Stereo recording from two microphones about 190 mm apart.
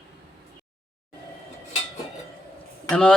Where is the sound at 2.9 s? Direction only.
5° left (ahead or behind).